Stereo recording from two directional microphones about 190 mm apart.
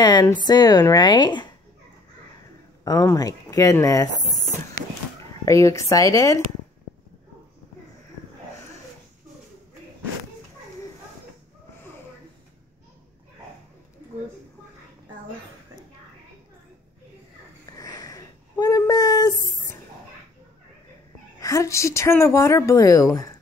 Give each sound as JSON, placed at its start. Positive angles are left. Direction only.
{"t": 0.0, "sound": "a woman's voice", "side_deg": 20}
{"t": 2.8, "sound": "speech", "side_deg": 20}
{"t": 5.4, "sound": "speech", "side_deg": 15}
{"t": 17.7, "sound": "a sound", "side_deg": 20}
{"t": 21.4, "sound": "speech", "side_deg": 15}